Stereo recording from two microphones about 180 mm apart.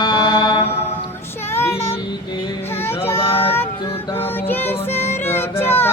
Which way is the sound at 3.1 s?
30° left (ahead or behind).